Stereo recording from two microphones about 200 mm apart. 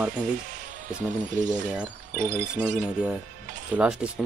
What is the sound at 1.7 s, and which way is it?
Speech, centre (ahead or behind).